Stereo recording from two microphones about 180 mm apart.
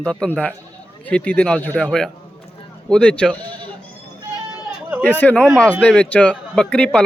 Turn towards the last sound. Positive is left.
turn(degrees=5)  # may be behind; listen again after turning